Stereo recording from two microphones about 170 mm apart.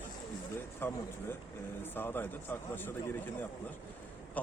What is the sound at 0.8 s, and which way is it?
Speech, 15° left (ahead or behind).